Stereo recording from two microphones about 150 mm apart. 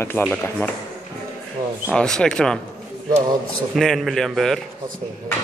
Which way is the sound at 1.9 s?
5° left (ahead or behind).